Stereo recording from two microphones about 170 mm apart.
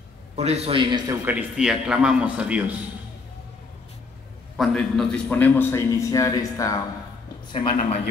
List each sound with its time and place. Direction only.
0.4 s a man's voice: 35° right (ahead or behind)
1.2 s a man's voice: 5° right (ahead or behind)
4.6 s a man's voice: 5° left (ahead or behind); by 7.8 s 25° left (ahead or behind)